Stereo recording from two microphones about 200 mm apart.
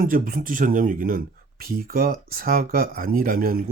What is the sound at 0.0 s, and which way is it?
Speech, 45° right (ahead or behind).